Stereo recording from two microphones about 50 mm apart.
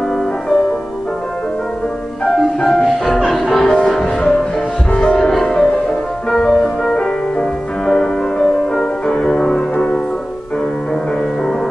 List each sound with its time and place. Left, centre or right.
2.2 s music: centre
3.1 s music: centre